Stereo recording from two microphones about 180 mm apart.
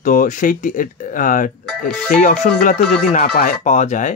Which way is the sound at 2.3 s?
60° left (ahead or behind).